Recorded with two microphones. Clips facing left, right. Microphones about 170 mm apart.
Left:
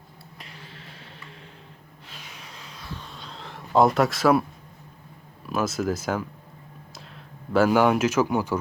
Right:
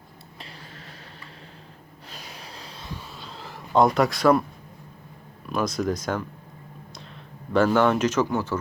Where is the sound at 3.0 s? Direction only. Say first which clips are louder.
Right 1 dB; 5° right (ahead or behind).